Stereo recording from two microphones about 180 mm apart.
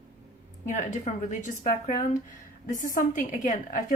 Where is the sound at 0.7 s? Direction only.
45° left (ahead or behind).